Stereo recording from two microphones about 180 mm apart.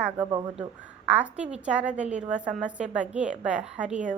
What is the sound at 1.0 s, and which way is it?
A woman's voice, 5° right (ahead or behind).